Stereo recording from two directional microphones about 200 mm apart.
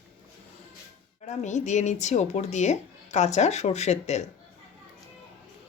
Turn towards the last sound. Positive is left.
turn(degrees=35)  # may be behind; listen again after turning